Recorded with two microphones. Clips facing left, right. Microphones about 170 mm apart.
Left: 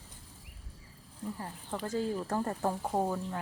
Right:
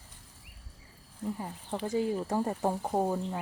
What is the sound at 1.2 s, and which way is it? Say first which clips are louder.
Speech: right 4 dB; 20° right (ahead or behind).